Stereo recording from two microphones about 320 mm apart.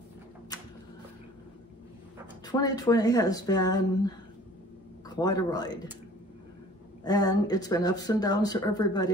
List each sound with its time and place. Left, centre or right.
2.4 s a man's voice: centre
7.1 s speech: centre